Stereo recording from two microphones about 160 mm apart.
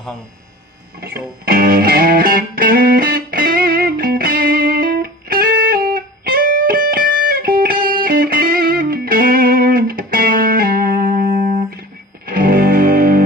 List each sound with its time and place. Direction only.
1.0 s music: 70° right (ahead or behind)